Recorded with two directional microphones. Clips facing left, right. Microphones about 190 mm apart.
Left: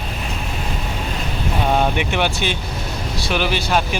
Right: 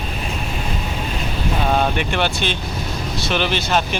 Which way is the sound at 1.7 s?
10° left (ahead or behind).